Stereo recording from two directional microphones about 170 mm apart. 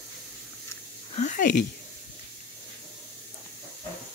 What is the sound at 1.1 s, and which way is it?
Speech, 45° left (ahead or behind).